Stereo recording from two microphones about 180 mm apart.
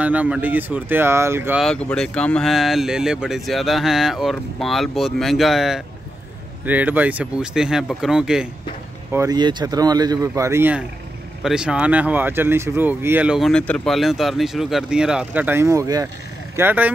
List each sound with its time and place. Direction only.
0.0 s speech: 10° right (ahead or behind)
1.6 s speech: 5° left (ahead or behind)
9.1 s speech: 20° right (ahead or behind)